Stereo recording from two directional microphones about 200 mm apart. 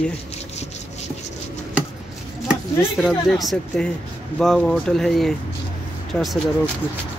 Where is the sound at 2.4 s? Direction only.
Centre (ahead or behind).